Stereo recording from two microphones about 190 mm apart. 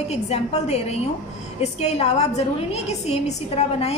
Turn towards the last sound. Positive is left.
turn(degrees=35)  # may be behind; listen again after turning